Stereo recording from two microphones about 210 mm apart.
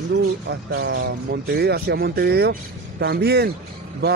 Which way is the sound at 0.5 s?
50° right (ahead or behind).